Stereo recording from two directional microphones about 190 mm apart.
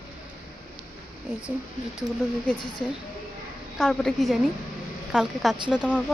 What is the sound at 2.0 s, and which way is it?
Speech, 5° left (ahead or behind).